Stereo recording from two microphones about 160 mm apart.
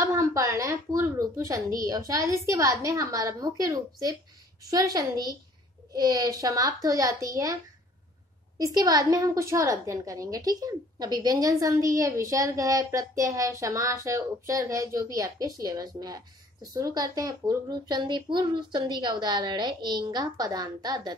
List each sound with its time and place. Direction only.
0.0 s a woman's voice: 20° right (ahead or behind)
8.5 s a woman's voice: 25° right (ahead or behind)